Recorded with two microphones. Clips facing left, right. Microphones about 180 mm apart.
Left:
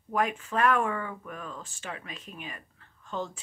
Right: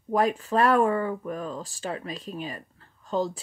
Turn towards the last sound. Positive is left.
turn(degrees=-35)  # may be behind; listen again after turning